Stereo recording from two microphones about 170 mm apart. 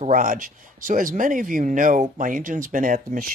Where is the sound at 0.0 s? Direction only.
50° right (ahead or behind).